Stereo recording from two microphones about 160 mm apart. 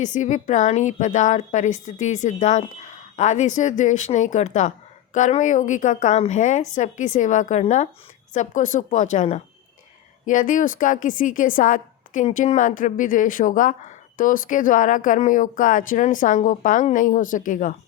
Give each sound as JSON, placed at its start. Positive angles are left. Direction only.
{"t": 0.0, "sound": "a woman's voice", "side_deg": 50}